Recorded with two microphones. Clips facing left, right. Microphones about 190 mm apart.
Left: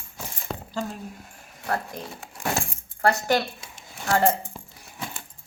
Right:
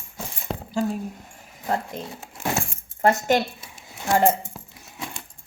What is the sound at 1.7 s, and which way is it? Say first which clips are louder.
Speech: right 2 dB; 20° right (ahead or behind).